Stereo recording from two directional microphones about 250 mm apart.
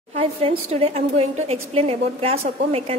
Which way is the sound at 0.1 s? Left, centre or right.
Right.